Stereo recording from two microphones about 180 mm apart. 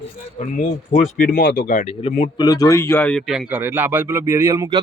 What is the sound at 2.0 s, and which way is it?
Speech, 30° left (ahead or behind).